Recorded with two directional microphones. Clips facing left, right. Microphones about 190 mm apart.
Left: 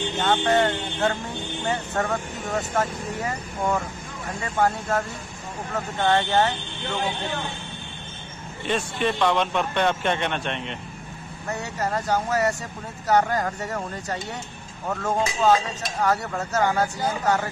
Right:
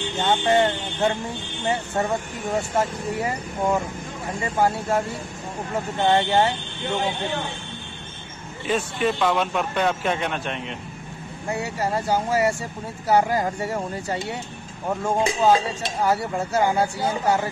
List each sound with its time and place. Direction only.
0.2 s speech: 10° right (ahead or behind)
8.6 s a man's voice: 5° right (ahead or behind)
15.5 s speech: 25° right (ahead or behind)
16.3 s speech: 15° right (ahead or behind)